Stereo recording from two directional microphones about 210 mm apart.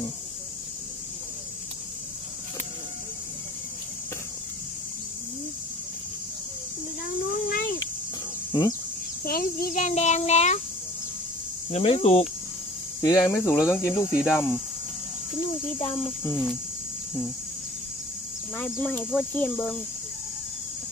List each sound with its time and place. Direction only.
7.2 s a sound: 45° left (ahead or behind)
8.5 s speech: 20° left (ahead or behind)
9.2 s a child's voice: 45° left (ahead or behind)
11.7 s speech: 30° left (ahead or behind); by 14.6 s 10° left (ahead or behind)
16.3 s speech: 10° left (ahead or behind)
18.6 s speech: 10° left (ahead or behind)